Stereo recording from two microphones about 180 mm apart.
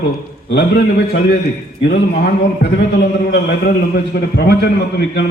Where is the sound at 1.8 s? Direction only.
65° left (ahead or behind).